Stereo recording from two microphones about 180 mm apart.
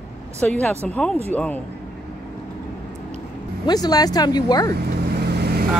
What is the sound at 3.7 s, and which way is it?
Speech, 20° left (ahead or behind).